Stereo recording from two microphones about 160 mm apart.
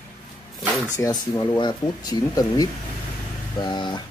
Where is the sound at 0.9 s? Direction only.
20° left (ahead or behind).